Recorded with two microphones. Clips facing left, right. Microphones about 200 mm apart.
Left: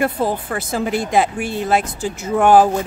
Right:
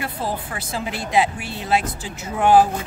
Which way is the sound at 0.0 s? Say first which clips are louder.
Left 8 dB; 50° left (ahead or behind).